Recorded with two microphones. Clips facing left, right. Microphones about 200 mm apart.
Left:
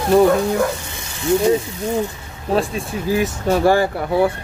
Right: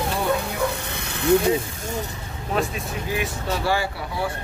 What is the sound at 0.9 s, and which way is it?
Sizzle, 60° right (ahead or behind).